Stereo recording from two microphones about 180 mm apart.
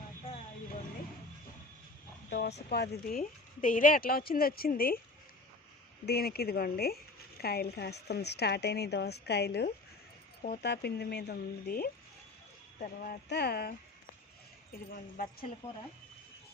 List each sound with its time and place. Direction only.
2.3 s speech: 60° left (ahead or behind)
6.1 s speech: 60° left (ahead or behind)